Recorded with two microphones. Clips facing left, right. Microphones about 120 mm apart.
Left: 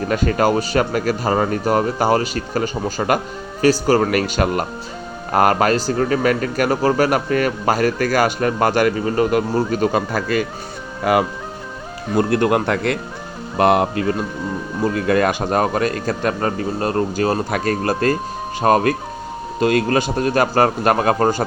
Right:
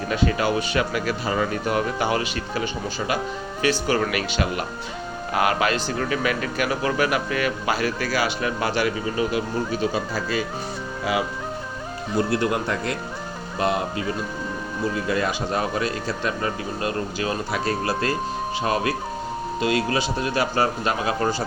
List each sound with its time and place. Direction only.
0.1 s a man's voice: 45° left (ahead or behind)